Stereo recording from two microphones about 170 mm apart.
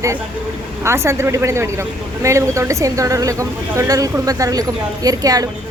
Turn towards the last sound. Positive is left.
turn(degrees=-20)  # may be behind; listen again after turning